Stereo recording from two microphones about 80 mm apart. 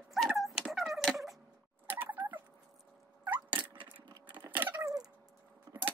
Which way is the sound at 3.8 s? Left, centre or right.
Right.